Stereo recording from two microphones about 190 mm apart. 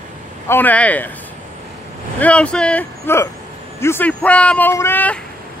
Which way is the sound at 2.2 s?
5° left (ahead or behind).